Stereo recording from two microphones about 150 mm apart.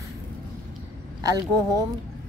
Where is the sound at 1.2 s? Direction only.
25° right (ahead or behind).